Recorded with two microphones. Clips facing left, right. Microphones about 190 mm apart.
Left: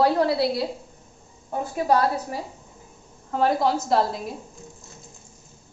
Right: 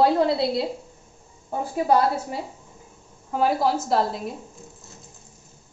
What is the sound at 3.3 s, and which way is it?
Speech, 5° right (ahead or behind).